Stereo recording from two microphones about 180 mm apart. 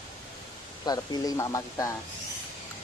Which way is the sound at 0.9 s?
20° left (ahead or behind).